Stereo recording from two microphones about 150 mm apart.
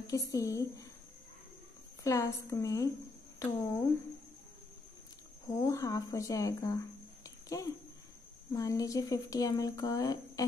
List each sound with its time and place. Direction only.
0.0 s speech: 20° left (ahead or behind)
2.0 s speech: 20° left (ahead or behind)
5.5 s speech: 20° left (ahead or behind)
7.2 s a sound: 20° left (ahead or behind)
8.5 s speech: 20° left (ahead or behind)